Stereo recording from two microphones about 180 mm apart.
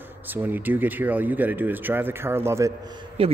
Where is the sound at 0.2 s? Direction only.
10° right (ahead or behind).